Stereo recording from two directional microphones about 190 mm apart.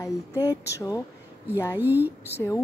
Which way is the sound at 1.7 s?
10° right (ahead or behind).